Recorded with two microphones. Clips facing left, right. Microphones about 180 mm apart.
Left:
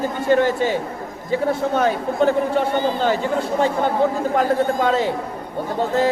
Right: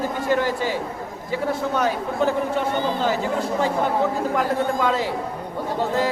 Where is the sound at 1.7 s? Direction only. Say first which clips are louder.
Left 3 dB; 55° left (ahead or behind).